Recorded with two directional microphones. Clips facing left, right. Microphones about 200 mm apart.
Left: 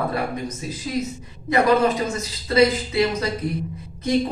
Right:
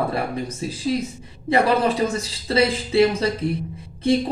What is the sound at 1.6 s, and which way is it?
Speech, 30° right (ahead or behind).